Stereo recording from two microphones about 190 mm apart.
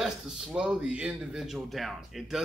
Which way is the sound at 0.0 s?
5° right (ahead or behind).